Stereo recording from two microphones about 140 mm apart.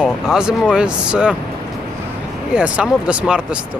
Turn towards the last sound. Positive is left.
turn(degrees=-5)  # may be behind; listen again after turning